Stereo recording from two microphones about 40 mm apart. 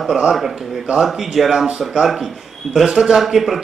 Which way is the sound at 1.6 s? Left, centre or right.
Centre.